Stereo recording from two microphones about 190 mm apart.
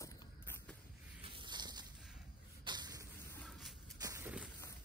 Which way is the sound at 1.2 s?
25° right (ahead or behind).